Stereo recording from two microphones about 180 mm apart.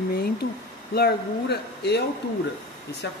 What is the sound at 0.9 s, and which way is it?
Speech, 60° left (ahead or behind).